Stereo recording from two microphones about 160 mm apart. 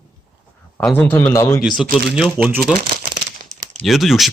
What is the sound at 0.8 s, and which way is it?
Speech, 10° left (ahead or behind).